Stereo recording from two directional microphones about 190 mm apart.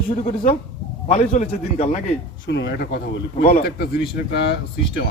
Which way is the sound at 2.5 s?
65° left (ahead or behind).